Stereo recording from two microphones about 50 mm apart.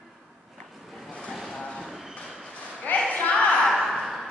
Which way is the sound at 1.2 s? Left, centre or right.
Centre.